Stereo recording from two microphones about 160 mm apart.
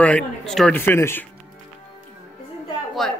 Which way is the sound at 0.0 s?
5° left (ahead or behind).